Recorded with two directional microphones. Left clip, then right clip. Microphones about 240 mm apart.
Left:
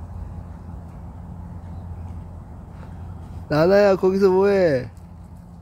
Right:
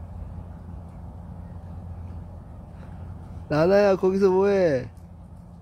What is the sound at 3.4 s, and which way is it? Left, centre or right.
Speech, centre.